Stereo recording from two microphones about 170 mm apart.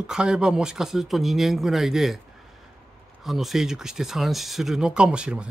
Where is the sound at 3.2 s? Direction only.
Centre (ahead or behind).